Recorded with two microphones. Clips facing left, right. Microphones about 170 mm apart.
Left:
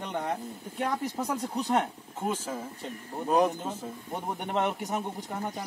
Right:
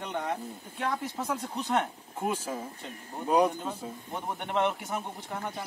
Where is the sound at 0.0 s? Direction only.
5° left (ahead or behind).